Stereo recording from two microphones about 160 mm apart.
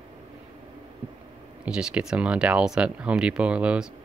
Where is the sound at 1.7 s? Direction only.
5° right (ahead or behind).